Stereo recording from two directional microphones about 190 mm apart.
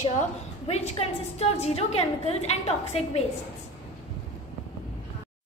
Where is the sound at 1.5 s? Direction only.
35° left (ahead or behind).